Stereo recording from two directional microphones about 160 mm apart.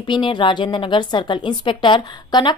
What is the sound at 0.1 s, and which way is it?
A woman's voice, 30° left (ahead or behind).